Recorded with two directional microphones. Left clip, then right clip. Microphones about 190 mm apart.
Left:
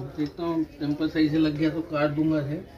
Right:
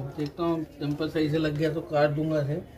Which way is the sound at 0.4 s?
Centre (ahead or behind).